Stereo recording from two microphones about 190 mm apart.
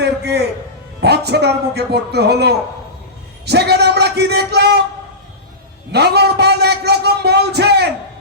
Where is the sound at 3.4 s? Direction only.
60° right (ahead or behind).